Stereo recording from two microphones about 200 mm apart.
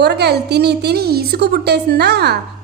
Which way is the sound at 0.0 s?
55° right (ahead or behind).